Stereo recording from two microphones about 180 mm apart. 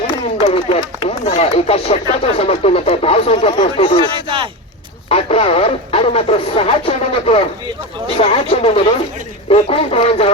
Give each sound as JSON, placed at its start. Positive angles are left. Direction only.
{"t": 0.4, "sound": "speech", "side_deg": 35}
{"t": 4.0, "sound": "speech", "side_deg": -25}
{"t": 5.0, "sound": "speech", "side_deg": 35}